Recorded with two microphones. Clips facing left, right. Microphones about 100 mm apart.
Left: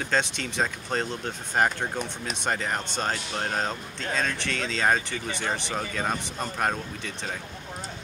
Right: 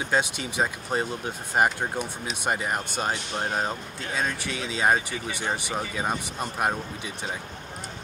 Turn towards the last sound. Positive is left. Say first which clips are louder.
# right 1 dB
turn(degrees=-10)  # may be behind; listen again after turning